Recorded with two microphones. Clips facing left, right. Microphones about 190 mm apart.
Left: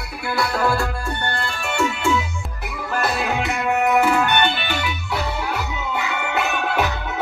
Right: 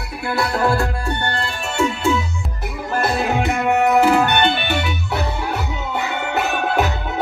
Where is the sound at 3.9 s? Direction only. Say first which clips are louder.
Right 3 dB; 35° right (ahead or behind).